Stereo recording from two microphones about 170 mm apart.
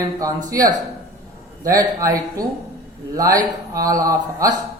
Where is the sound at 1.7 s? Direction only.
20° right (ahead or behind).